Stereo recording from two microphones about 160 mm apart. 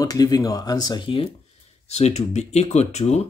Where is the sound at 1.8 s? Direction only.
45° left (ahead or behind).